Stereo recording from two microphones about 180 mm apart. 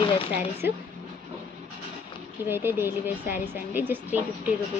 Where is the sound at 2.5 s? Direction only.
10° right (ahead or behind).